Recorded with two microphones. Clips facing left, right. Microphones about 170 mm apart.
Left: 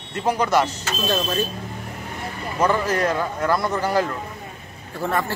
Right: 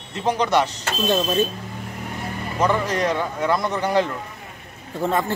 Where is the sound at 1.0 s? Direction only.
20° right (ahead or behind).